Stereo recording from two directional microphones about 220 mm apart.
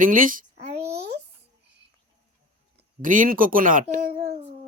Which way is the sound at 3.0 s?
40° right (ahead or behind).